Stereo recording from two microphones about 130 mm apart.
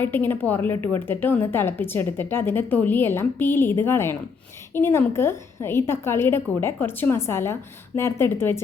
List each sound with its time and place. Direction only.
0.0 s a woman's voice: 15° left (ahead or behind)